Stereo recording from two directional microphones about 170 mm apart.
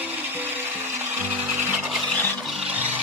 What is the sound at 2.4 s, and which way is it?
Music, 5° right (ahead or behind).